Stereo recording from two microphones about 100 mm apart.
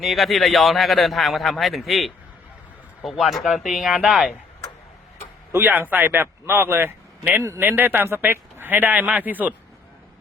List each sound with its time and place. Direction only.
0.0 s a man's voice: centre (ahead or behind)
5.5 s speech: 20° right (ahead or behind)